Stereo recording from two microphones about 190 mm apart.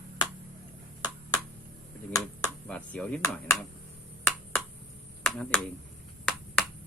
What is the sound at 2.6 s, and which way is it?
Speech, 5° left (ahead or behind).